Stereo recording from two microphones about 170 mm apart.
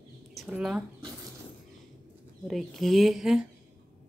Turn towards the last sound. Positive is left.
turn(degrees=0)  # may be behind; listen again after turning